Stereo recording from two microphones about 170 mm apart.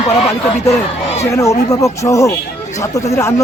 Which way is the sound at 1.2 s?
15° left (ahead or behind).